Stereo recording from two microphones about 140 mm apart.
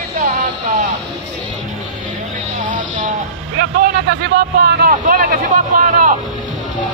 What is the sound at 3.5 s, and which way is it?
Speech, 90° right.